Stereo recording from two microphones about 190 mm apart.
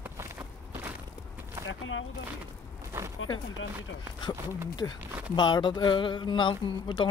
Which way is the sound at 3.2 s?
90° left.